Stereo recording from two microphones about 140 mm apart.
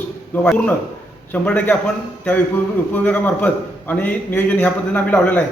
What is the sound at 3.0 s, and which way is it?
A man's voice, 10° left (ahead or behind).